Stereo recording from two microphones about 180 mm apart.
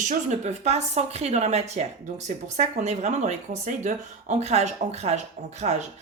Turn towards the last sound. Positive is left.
turn(degrees=-40)  # may be behind; listen again after turning